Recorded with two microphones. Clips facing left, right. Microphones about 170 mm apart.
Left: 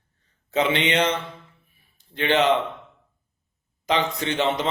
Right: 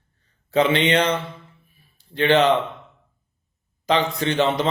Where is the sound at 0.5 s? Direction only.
20° left (ahead or behind).